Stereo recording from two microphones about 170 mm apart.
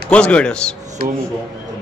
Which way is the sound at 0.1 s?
5° left (ahead or behind).